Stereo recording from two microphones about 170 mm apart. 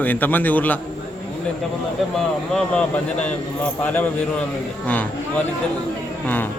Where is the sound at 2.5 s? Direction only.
5° left (ahead or behind).